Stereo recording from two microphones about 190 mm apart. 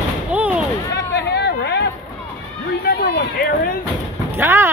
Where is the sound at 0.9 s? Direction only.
65° left (ahead or behind).